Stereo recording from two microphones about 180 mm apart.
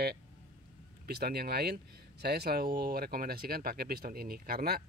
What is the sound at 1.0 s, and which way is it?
Speech, 60° right (ahead or behind).